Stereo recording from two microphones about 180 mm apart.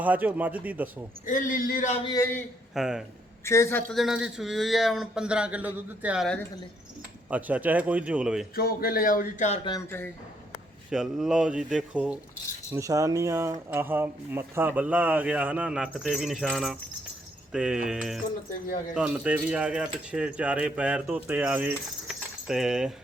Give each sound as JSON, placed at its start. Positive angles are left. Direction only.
{"t": 0.0, "sound": "speech", "side_deg": -10}
{"t": 1.3, "sound": "speech", "side_deg": 50}
{"t": 2.0, "sound": "a man's voice", "side_deg": 20}
{"t": 2.7, "sound": "speech", "side_deg": -5}
{"t": 3.4, "sound": "a woman's voice", "side_deg": 15}
{"t": 3.9, "sound": "speech", "side_deg": 0}
{"t": 7.3, "sound": "speech", "side_deg": -10}
{"t": 8.5, "sound": "speech", "side_deg": 55}
{"t": 10.9, "sound": "speech", "side_deg": 0}
{"t": 12.7, "sound": "speech", "side_deg": -20}